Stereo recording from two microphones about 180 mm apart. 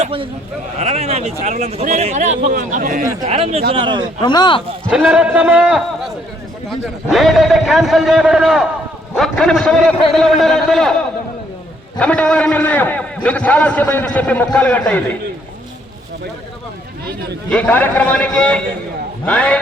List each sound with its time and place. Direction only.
0.0 s a man's voice: 30° right (ahead or behind); by 3.1 s 45° right (ahead or behind)
3.2 s a man's voice: 35° right (ahead or behind)
4.2 s speech: 25° left (ahead or behind)
4.9 s a man's voice: 5° right (ahead or behind)
11.9 s a man's voice: 5° left (ahead or behind)
17.5 s a man's voice: 5° left (ahead or behind)